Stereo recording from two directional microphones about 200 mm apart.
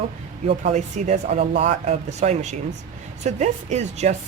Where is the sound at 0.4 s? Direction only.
35° right (ahead or behind).